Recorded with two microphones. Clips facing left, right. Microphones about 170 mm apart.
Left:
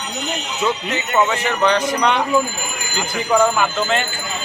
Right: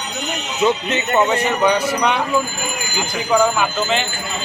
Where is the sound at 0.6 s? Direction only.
20° right (ahead or behind).